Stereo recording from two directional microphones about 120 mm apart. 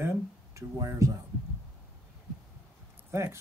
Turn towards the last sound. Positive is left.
turn(degrees=-20)  # may be behind; listen again after turning